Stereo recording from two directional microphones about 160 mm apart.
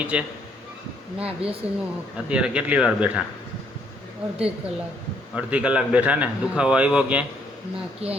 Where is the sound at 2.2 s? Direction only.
5° right (ahead or behind).